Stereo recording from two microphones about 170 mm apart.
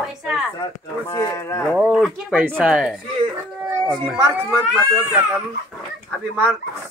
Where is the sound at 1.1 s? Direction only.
15° left (ahead or behind).